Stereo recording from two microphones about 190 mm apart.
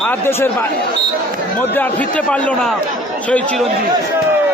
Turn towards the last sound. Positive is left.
turn(degrees=5)  # may be behind; listen again after turning